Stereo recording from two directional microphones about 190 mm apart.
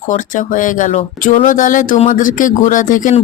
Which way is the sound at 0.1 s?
40° left (ahead or behind).